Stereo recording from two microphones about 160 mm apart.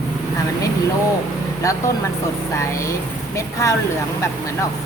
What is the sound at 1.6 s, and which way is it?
A woman's voice, 20° left (ahead or behind).